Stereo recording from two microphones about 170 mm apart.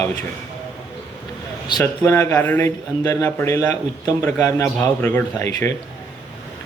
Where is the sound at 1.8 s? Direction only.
15° left (ahead or behind).